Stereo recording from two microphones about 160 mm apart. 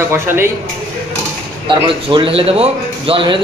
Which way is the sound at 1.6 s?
30° right (ahead or behind).